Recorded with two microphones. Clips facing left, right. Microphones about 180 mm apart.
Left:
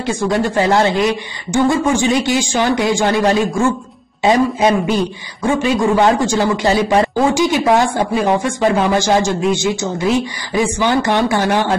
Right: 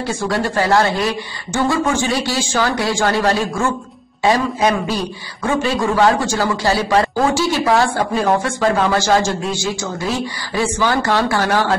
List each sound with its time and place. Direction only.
0.0 s a woman's voice: 20° left (ahead or behind)